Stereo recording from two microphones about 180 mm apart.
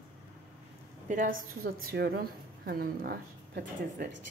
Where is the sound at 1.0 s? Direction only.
45° right (ahead or behind).